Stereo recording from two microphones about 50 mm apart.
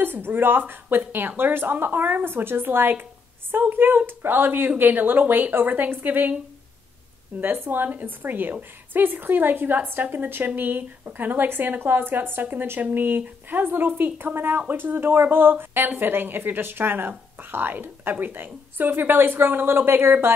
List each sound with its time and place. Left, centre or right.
0.0 s a woman's voice: right
7.3 s a woman's voice: right